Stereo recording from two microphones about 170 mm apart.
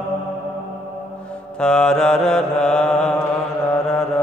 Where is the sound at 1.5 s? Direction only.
5° left (ahead or behind).